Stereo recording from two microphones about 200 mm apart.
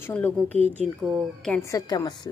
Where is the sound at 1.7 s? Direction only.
20° left (ahead or behind).